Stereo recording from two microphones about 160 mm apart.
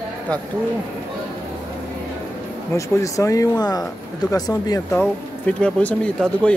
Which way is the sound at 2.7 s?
20° left (ahead or behind).